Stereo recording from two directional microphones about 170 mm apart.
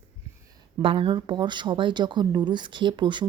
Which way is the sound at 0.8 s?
30° right (ahead or behind).